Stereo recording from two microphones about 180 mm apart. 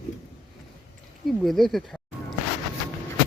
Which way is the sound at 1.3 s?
Centre (ahead or behind).